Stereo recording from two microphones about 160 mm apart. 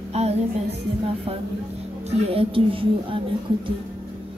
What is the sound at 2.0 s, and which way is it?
A woman's voice, 35° right (ahead or behind).